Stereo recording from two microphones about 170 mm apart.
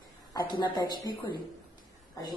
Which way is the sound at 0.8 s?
25° left (ahead or behind).